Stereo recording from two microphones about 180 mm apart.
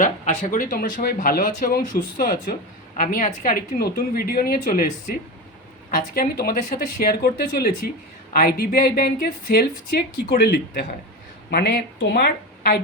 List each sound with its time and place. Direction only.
0.0 s a woman's voice: 45° left (ahead or behind); by 12.7 s 60° left (ahead or behind)